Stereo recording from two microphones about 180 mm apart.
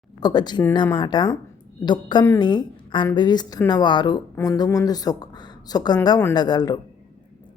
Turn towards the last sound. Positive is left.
turn(degrees=20)  # may be behind; listen again after turning